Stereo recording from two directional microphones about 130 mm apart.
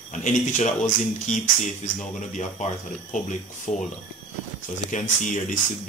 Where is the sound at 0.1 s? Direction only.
70° left (ahead or behind).